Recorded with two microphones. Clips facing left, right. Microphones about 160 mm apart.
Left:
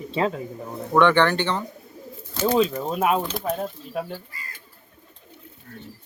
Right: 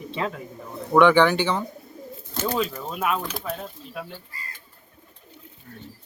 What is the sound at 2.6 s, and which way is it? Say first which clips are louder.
Speech: left 5 dB; 35° left (ahead or behind).